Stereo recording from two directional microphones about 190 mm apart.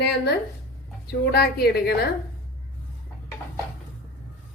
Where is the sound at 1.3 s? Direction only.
55° left (ahead or behind).